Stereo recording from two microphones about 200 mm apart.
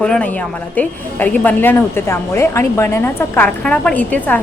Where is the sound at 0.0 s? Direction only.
5° left (ahead or behind).